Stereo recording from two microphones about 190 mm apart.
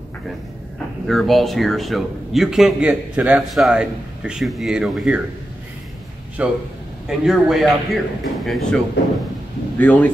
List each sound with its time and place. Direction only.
1.0 s speech: centre (ahead or behind)
6.4 s a man's voice: 5° right (ahead or behind)